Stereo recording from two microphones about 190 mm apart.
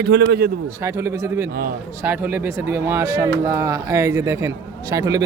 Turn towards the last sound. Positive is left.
turn(degrees=-20)  # may be behind; listen again after turning